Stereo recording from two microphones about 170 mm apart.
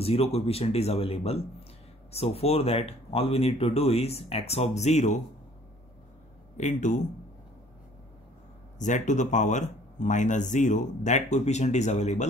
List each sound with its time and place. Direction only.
0.0 s speech: 35° left (ahead or behind)
6.5 s speech: 45° left (ahead or behind)
8.7 s speech: 45° left (ahead or behind)